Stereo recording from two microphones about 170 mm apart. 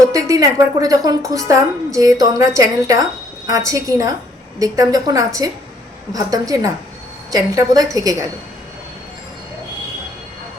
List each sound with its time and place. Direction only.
0.1 s a woman's voice: 20° right (ahead or behind)